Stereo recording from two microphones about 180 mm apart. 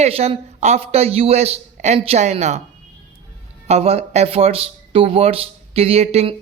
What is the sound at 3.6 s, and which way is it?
Speech, 35° right (ahead or behind).